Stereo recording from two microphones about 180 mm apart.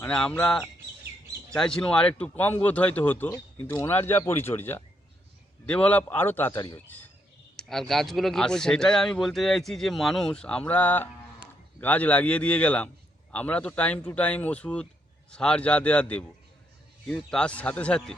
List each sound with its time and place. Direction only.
0.0 s speech: 5° left (ahead or behind)